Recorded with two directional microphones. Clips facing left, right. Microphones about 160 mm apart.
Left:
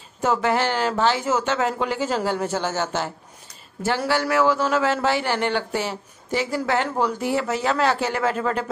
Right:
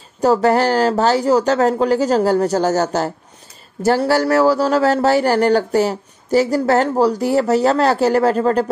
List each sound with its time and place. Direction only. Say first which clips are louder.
0.2 s speech: right 7 dB; 40° right (ahead or behind)